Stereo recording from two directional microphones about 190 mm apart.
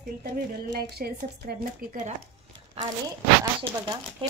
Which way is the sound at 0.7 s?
60° right (ahead or behind).